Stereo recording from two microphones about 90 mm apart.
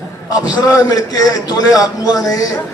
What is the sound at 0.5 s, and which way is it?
A man's voice, 40° left (ahead or behind).